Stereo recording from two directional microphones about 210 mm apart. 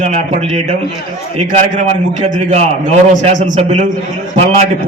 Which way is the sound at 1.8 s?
30° right (ahead or behind).